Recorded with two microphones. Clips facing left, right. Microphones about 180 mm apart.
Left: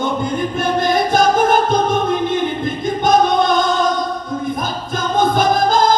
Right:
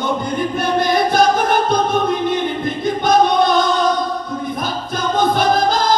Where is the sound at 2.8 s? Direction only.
50° left (ahead or behind).